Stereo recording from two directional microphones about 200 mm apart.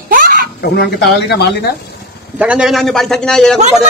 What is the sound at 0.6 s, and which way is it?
Speech, 55° left (ahead or behind).